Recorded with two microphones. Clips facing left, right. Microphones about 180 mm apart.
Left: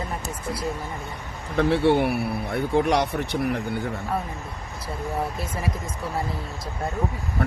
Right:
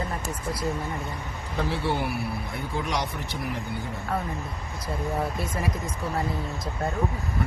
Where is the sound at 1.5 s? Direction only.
65° left (ahead or behind).